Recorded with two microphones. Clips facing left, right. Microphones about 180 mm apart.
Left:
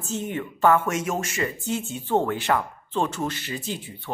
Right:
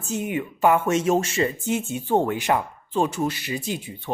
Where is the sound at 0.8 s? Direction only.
30° right (ahead or behind).